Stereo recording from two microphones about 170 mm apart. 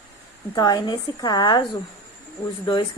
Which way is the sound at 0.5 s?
25° left (ahead or behind).